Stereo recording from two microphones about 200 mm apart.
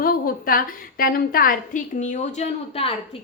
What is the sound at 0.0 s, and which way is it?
A woman's voice, 45° left (ahead or behind).